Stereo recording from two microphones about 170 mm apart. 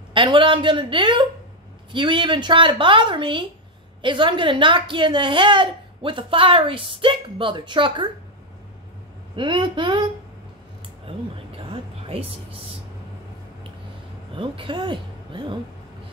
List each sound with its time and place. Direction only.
0.1 s a woman's voice: 30° right (ahead or behind)
9.3 s speech: 30° right (ahead or behind)
11.1 s a sound: 35° right (ahead or behind)
14.3 s speech: 30° right (ahead or behind)